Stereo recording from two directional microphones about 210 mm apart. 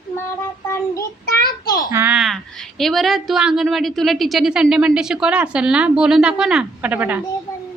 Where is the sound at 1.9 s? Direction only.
10° right (ahead or behind).